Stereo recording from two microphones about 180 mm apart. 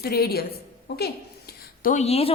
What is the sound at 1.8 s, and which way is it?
Speech, 45° left (ahead or behind).